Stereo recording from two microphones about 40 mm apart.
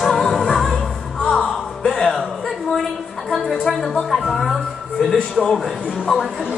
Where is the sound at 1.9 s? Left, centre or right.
Centre.